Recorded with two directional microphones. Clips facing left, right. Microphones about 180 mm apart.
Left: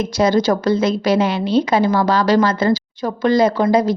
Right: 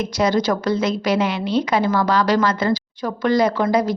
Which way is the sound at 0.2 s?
30° left (ahead or behind).